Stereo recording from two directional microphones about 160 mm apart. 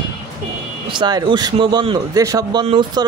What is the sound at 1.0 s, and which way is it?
Speech, 25° right (ahead or behind).